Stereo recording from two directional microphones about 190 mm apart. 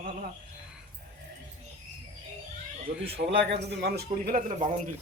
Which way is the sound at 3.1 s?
60° right (ahead or behind).